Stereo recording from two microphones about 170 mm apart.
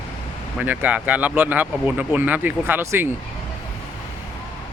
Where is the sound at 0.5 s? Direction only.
10° right (ahead or behind).